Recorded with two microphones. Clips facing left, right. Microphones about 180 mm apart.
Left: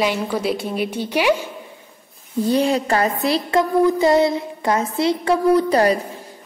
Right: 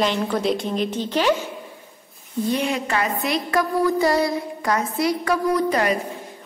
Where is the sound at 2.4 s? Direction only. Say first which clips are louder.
Left 5 dB; 35° left (ahead or behind).